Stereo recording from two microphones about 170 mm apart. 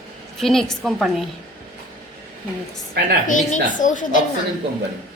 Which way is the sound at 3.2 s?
50° left (ahead or behind).